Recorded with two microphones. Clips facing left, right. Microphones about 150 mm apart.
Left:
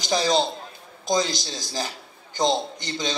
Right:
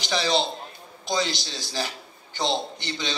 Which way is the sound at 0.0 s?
40° left (ahead or behind).